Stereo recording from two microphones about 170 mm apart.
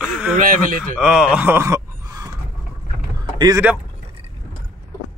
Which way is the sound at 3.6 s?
10° right (ahead or behind).